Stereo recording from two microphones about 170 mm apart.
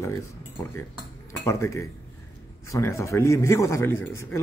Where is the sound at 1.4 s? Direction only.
15° left (ahead or behind).